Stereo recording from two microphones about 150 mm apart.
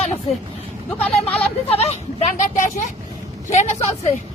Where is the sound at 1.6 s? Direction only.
45° left (ahead or behind).